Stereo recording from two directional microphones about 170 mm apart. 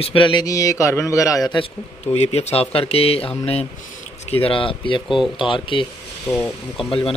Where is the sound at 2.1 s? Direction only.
40° left (ahead or behind).